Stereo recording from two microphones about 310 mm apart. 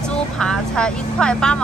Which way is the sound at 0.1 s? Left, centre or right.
Centre.